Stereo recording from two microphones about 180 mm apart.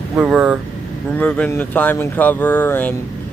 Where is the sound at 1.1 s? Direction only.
5° left (ahead or behind).